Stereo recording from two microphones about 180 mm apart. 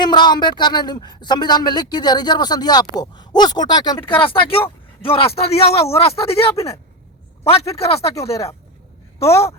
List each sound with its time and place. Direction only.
0.0 s a woman's voice: 25° left (ahead or behind)
7.5 s speech: 35° left (ahead or behind)